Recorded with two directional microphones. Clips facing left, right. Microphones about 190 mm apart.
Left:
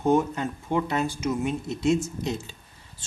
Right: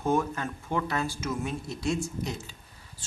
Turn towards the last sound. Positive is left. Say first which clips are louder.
# even
turn(degrees=25)  # may be behind; listen again after turning